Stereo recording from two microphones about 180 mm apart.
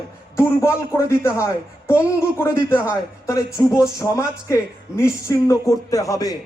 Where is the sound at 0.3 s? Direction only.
15° left (ahead or behind).